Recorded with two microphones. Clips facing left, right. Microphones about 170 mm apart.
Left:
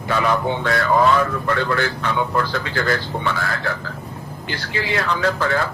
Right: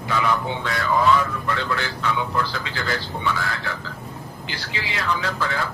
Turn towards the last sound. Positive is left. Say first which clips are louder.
# left 6 dB
turn(degrees=50)  # may be behind; listen again after turning